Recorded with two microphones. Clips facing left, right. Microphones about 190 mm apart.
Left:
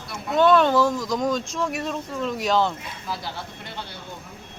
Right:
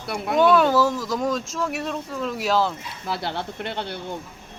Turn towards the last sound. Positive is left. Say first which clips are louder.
# right 7 dB
turn(degrees=-65)  # may be behind; listen again after turning